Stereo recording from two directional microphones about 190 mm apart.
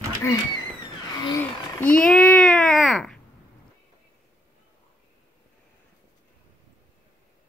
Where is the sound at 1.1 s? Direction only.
20° left (ahead or behind).